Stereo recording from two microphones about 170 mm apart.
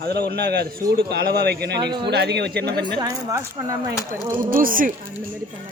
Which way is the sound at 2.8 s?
20° right (ahead or behind).